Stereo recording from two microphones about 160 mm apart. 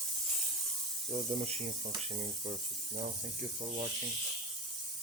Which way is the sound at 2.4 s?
50° right (ahead or behind).